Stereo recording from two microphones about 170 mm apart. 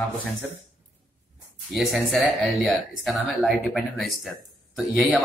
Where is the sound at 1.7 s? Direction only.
Centre (ahead or behind).